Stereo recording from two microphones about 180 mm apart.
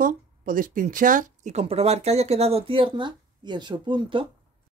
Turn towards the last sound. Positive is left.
turn(degrees=-25)  # may be behind; listen again after turning